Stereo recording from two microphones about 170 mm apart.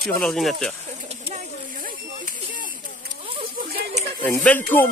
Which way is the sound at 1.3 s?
50° right (ahead or behind).